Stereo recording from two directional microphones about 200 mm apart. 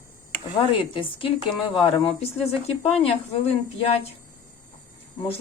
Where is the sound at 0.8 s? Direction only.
25° left (ahead or behind).